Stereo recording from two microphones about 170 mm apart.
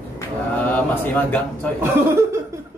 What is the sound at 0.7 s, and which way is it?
Speech, 10° left (ahead or behind).